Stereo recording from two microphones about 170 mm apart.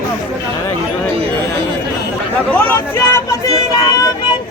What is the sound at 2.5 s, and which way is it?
Speech, 15° left (ahead or behind).